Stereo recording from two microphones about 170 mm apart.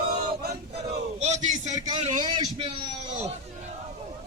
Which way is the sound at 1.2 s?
45° right (ahead or behind).